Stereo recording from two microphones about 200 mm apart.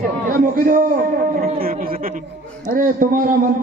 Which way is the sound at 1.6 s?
45° right (ahead or behind).